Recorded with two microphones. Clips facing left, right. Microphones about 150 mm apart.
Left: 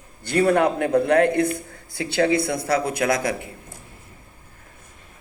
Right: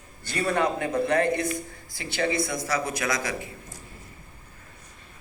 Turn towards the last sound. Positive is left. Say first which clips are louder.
# left 5 dB
turn(degrees=60)  # may be behind; listen again after turning